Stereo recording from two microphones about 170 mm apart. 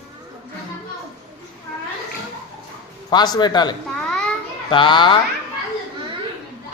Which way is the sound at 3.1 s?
25° left (ahead or behind).